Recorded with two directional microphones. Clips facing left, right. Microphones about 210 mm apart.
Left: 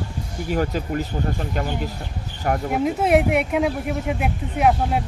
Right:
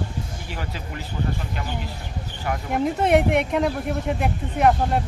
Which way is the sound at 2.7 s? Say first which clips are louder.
Even; 5° left (ahead or behind).